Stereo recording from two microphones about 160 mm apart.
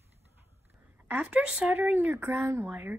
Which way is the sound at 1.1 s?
10° right (ahead or behind).